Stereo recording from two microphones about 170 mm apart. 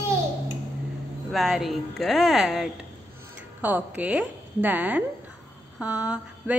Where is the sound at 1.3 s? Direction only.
Centre (ahead or behind).